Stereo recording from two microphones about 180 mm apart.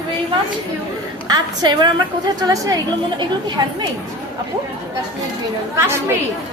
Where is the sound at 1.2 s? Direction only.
20° right (ahead or behind).